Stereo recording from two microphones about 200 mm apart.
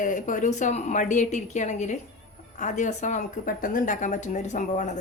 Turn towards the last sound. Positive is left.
turn(degrees=40)  # may be behind; listen again after turning